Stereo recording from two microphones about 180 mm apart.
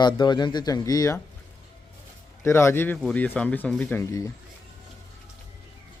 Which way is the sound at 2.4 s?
15° left (ahead or behind).